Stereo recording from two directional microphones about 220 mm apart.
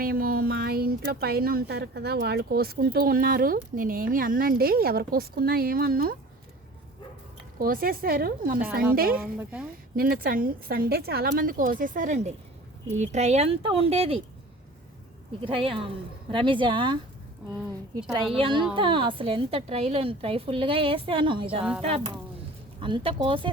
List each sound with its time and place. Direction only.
0.0 s speech: 40° right (ahead or behind)
7.6 s a woman's voice: 40° right (ahead or behind)
9.2 s a woman's voice: 5° right (ahead or behind)
9.9 s a woman's voice: 40° right (ahead or behind)
15.4 s a woman's voice: 25° right (ahead or behind)
18.3 s a woman's voice: 25° right (ahead or behind)